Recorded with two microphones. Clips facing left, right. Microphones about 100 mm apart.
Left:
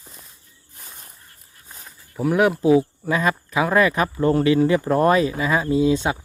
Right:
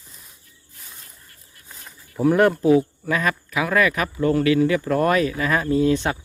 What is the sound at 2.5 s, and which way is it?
Speech, 15° left (ahead or behind).